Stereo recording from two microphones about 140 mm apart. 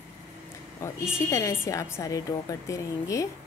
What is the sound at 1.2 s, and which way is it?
A woman's voice, 20° left (ahead or behind).